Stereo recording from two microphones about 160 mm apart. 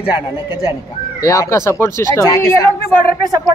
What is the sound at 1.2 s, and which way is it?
Speech, 20° left (ahead or behind).